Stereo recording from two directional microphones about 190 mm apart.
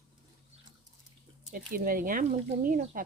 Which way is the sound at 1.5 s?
45° right (ahead or behind).